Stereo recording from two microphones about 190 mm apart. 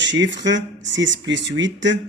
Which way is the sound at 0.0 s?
70° right (ahead or behind).